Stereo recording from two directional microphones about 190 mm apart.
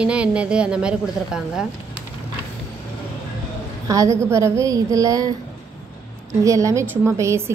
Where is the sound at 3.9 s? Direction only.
15° right (ahead or behind).